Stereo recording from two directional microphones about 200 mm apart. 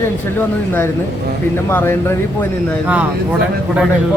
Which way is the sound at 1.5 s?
10° left (ahead or behind).